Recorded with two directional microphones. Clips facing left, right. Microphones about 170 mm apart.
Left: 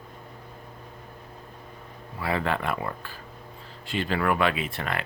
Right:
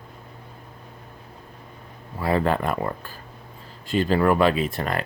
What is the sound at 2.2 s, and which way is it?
Speech, 40° right (ahead or behind).